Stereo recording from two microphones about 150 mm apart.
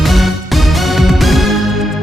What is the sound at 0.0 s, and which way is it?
Music, centre (ahead or behind).